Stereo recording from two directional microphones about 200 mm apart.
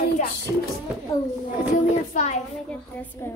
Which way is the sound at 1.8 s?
35° left (ahead or behind).